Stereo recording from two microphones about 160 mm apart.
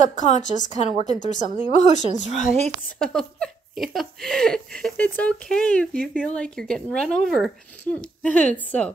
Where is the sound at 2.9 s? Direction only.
5° left (ahead or behind).